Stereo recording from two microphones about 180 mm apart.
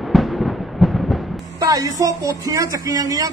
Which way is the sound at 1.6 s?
20° right (ahead or behind).